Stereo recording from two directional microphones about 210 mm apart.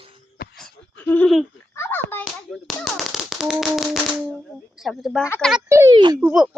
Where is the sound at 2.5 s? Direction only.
Centre (ahead or behind).